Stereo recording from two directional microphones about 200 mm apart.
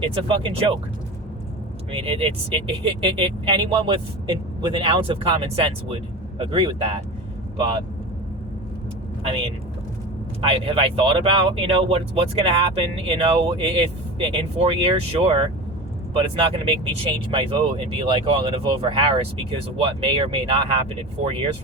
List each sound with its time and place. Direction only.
0.0 s speech: 25° right (ahead or behind)
1.9 s speech: 30° right (ahead or behind)
10.4 s speech: 25° right (ahead or behind)